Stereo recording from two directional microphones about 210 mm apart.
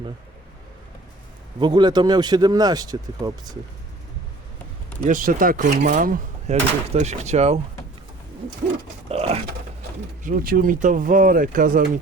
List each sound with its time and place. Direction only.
1.5 s speech: 20° right (ahead or behind)
5.0 s speech: 40° right (ahead or behind)
9.0 s speech: 30° right (ahead or behind)
10.2 s speech: 40° right (ahead or behind)